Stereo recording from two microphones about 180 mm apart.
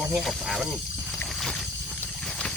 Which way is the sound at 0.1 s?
Centre (ahead or behind).